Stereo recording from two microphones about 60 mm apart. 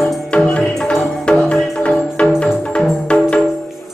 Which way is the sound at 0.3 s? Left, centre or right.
Centre.